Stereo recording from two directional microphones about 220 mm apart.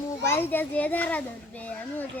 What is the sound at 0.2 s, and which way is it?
A child's voice, 10° left (ahead or behind).